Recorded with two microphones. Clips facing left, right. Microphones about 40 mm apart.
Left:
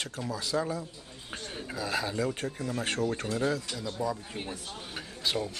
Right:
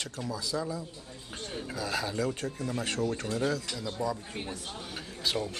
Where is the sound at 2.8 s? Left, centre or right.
Left.